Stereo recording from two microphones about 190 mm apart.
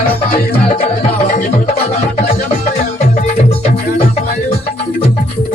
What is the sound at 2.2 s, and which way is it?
Music, 35° left (ahead or behind).